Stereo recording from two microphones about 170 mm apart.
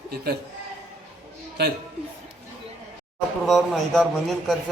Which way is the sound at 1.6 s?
70° right (ahead or behind).